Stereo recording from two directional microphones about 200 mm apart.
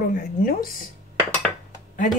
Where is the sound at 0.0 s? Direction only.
45° left (ahead or behind).